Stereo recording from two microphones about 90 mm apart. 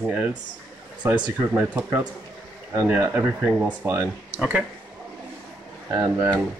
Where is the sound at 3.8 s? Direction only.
35° right (ahead or behind).